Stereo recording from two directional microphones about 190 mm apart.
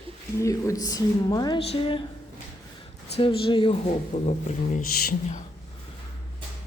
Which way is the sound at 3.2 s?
25° left (ahead or behind).